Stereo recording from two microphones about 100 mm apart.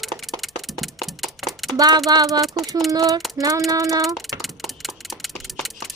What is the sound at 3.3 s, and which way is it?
Child singing, 35° right (ahead or behind).